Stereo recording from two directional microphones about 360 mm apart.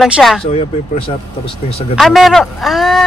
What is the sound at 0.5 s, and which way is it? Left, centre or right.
Speech, centre.